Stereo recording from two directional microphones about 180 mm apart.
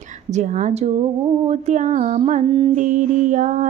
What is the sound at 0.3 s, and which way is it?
Music, 40° right (ahead or behind).